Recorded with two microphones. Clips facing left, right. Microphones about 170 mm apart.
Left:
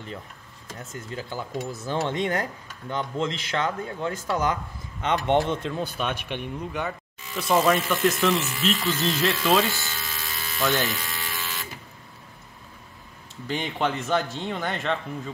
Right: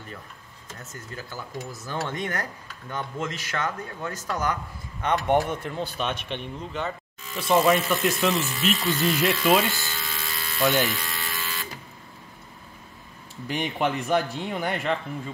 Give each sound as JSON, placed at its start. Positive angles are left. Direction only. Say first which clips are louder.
{"t": 1.9, "sound": "speech", "louder": "left 4 dB", "side_deg": 20}
{"t": 7.3, "sound": "speech", "louder": "right 1 dB", "side_deg": 0}
{"t": 9.7, "sound": "electric shaver", "louder": "even", "side_deg": 0}
{"t": 13.5, "sound": "a man's voice", "louder": "right 1 dB", "side_deg": -10}